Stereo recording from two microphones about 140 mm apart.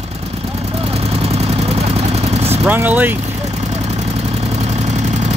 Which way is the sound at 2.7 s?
15° right (ahead or behind).